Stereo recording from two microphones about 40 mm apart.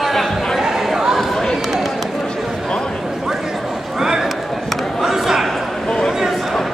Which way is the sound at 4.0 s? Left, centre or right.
Centre.